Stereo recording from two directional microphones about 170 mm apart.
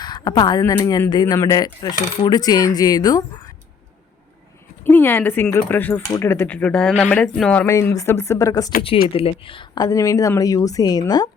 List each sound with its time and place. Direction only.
0.0 s speech: 25° left (ahead or behind)
4.8 s speech: 10° left (ahead or behind)
9.1 s speech: 30° left (ahead or behind)